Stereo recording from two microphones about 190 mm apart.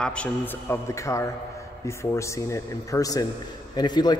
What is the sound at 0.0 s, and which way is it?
A man's voice, 5° left (ahead or behind).